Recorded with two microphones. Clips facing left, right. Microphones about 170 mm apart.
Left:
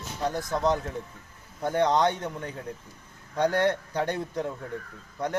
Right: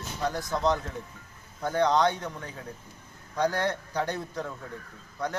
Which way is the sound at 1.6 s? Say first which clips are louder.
Left 1 dB; 20° left (ahead or behind).